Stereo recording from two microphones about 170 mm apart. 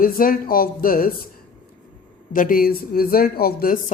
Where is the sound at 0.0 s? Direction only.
55° left (ahead or behind).